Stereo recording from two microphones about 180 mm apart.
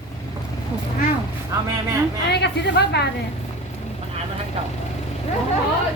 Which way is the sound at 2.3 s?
70° left (ahead or behind).